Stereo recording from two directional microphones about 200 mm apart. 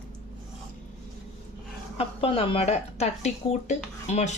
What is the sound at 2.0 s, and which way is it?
Speech, 30° left (ahead or behind).